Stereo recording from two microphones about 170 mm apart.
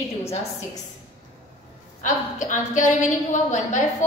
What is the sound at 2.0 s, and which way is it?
A woman's voice, 45° left (ahead or behind).